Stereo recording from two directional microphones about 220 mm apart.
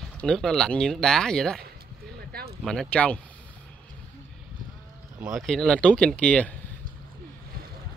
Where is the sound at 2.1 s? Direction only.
45° right (ahead or behind).